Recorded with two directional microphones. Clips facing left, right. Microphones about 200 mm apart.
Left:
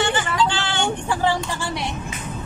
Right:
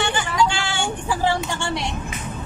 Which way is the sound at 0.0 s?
15° right (ahead or behind).